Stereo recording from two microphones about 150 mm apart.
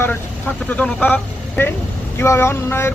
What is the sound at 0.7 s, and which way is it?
Speech, 10° left (ahead or behind).